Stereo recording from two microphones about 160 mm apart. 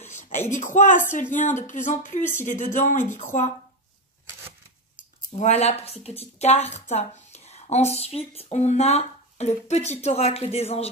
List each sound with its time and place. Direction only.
0.5 s speech: 50° left (ahead or behind)
4.9 s speech: 45° left (ahead or behind)